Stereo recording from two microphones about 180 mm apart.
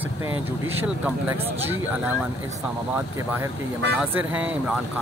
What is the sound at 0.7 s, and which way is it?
Speech, 10° right (ahead or behind).